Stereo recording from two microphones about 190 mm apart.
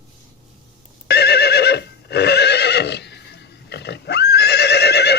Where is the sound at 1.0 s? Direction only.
60° left (ahead or behind).